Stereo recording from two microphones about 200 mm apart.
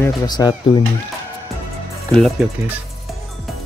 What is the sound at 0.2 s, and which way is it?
Speech, 20° left (ahead or behind).